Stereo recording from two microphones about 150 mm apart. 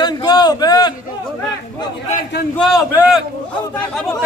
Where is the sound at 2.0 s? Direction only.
65° left (ahead or behind).